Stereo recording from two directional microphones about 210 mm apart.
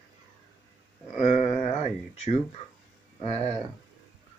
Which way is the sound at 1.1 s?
30° left (ahead or behind).